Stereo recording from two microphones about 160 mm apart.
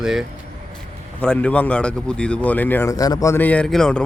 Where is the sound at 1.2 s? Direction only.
5° left (ahead or behind).